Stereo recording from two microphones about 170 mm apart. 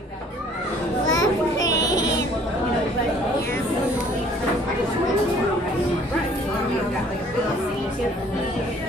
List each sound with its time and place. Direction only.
1.1 s children playing: 20° left (ahead or behind)